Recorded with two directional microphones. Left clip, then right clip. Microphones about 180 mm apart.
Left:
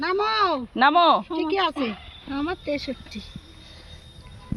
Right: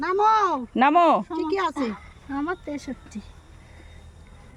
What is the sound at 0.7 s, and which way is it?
Speech, 30° right (ahead or behind).